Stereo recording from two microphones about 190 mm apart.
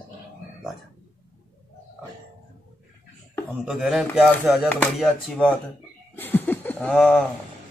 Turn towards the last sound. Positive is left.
turn(degrees=5)  # may be behind; listen again after turning